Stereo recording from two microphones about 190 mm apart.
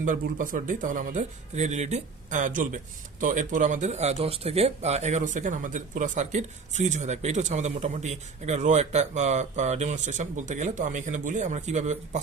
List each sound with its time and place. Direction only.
0.0 s speech: 45° right (ahead or behind)